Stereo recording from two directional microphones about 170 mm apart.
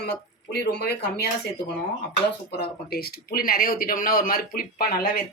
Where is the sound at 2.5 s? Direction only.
65° left (ahead or behind).